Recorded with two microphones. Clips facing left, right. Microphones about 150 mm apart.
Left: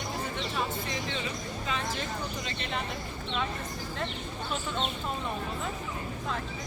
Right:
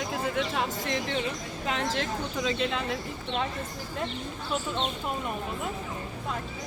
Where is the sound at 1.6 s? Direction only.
90° right.